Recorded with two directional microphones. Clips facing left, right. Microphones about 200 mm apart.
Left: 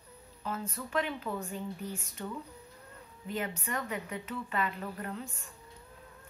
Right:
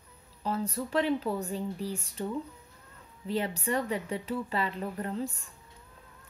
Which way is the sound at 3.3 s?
35° right (ahead or behind).